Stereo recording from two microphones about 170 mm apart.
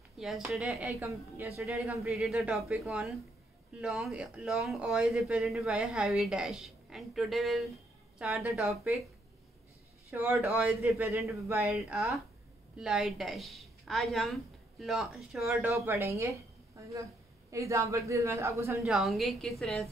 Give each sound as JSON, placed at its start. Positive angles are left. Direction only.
{"t": 0.2, "sound": "speech", "side_deg": 0}
{"t": 0.9, "sound": "a man's voice", "side_deg": -15}
{"t": 1.6, "sound": "speech", "side_deg": 0}
{"t": 10.1, "sound": "a man's voice", "side_deg": -10}
{"t": 11.7, "sound": "speech", "side_deg": 0}
{"t": 15.7, "sound": "a man's voice", "side_deg": -15}
{"t": 18.9, "sound": "speech", "side_deg": 0}